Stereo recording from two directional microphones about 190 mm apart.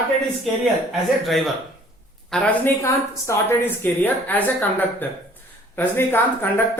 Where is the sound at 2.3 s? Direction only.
15° left (ahead or behind).